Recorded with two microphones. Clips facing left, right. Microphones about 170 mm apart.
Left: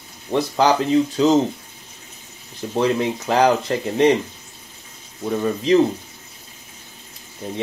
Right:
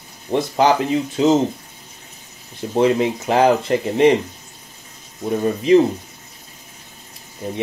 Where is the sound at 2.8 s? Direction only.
20° right (ahead or behind).